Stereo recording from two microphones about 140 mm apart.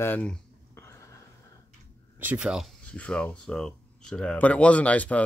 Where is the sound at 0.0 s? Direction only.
10° left (ahead or behind).